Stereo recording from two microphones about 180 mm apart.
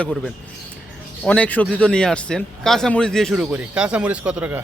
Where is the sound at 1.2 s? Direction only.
10° left (ahead or behind).